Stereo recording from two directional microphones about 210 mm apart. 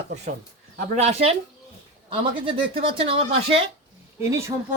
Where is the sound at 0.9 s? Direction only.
30° right (ahead or behind).